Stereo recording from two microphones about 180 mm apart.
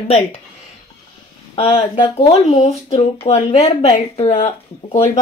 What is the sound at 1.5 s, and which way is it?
A woman's voice, 30° left (ahead or behind).